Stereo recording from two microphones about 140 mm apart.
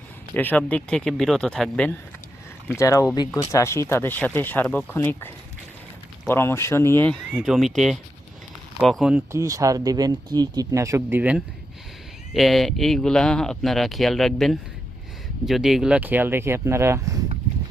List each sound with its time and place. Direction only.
0.3 s speech: 10° left (ahead or behind)
2.7 s speech: 20° left (ahead or behind)
7.3 s speech: centre (ahead or behind)
9.3 s speech: 25° right (ahead or behind)
12.3 s speech: centre (ahead or behind); by 17.2 s 20° right (ahead or behind)